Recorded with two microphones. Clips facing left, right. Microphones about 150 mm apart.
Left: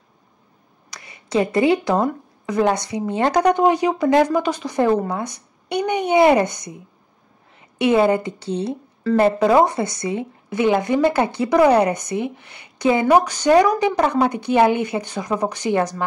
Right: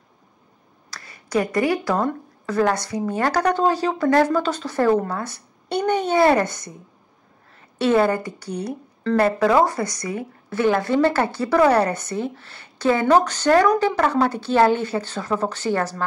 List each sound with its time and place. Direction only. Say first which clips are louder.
0.8 s a woman's voice: left 1 dB; 20° left (ahead or behind)